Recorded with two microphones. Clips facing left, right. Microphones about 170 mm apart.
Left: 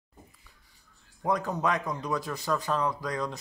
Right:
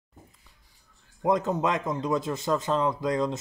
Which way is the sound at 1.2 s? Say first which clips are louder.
Right 4 dB; 20° right (ahead or behind).